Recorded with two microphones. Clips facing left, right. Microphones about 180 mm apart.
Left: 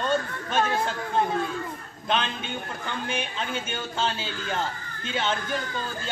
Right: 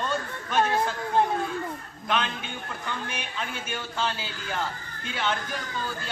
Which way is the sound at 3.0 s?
25° left (ahead or behind).